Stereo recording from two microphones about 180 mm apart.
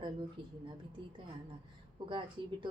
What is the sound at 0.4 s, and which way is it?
Speech, 25° right (ahead or behind).